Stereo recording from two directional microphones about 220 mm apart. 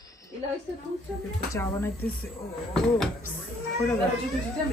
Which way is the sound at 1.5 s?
10° left (ahead or behind).